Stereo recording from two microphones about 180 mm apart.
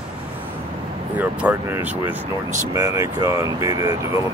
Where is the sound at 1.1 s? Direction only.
10° right (ahead or behind).